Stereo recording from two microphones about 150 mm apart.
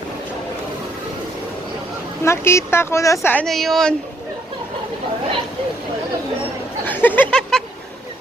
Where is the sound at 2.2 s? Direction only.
20° left (ahead or behind).